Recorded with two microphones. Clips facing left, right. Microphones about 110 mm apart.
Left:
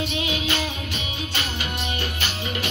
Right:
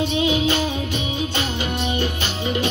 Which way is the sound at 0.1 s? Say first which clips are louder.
Right 7 dB; 25° right (ahead or behind).